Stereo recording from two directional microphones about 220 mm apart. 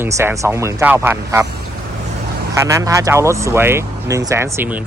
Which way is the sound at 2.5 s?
15° right (ahead or behind).